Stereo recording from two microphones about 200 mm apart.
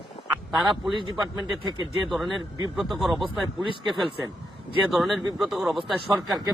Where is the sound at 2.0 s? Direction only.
Centre (ahead or behind).